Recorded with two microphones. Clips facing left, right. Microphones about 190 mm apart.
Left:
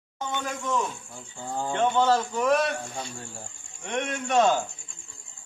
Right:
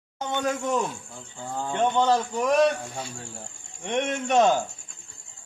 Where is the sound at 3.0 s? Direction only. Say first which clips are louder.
Right 1 dB; centre (ahead or behind).